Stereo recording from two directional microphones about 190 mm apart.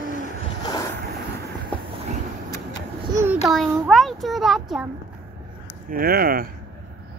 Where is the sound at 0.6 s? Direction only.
20° left (ahead or behind).